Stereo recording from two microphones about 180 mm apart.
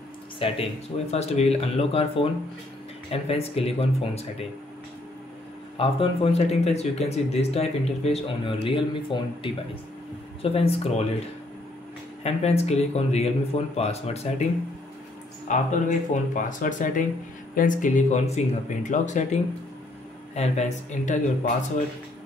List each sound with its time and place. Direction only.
0.4 s speech: 30° left (ahead or behind)
5.8 s speech: 30° left (ahead or behind)
10.4 s speech: 35° left (ahead or behind)
12.2 s speech: 35° left (ahead or behind)
15.4 s speech: 45° left (ahead or behind)
20.3 s speech: 40° left (ahead or behind)